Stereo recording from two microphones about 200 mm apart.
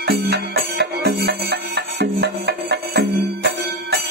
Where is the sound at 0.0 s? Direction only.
55° right (ahead or behind).